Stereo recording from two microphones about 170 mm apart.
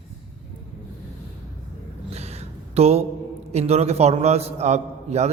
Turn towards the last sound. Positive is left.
turn(degrees=-40)  # may be behind; listen again after turning